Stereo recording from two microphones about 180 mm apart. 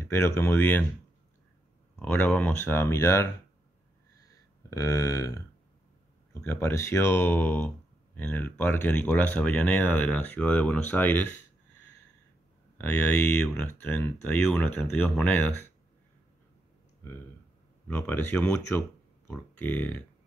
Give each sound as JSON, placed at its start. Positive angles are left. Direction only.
{"t": 0.0, "sound": "speech", "side_deg": 15}
{"t": 2.0, "sound": "speech", "side_deg": 10}
{"t": 4.6, "sound": "speech", "side_deg": 15}
{"t": 6.4, "sound": "speech", "side_deg": 10}
{"t": 12.7, "sound": "speech", "side_deg": 10}
{"t": 17.8, "sound": "speech", "side_deg": 10}